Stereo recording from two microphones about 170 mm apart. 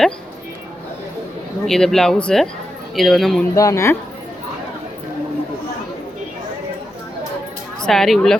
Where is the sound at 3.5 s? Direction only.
20° left (ahead or behind).